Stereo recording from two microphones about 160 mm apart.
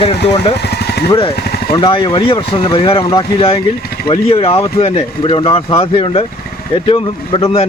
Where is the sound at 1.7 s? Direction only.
30° left (ahead or behind).